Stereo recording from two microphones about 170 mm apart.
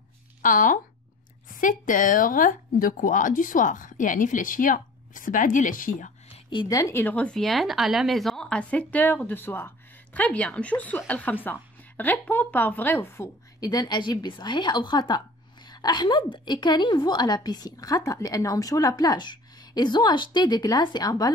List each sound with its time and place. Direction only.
0.4 s speech: 50° left (ahead or behind)
6.5 s a woman's voice: 25° left (ahead or behind)